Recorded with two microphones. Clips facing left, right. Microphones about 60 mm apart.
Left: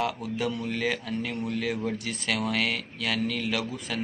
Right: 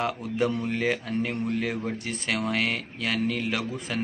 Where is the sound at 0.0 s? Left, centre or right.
Right.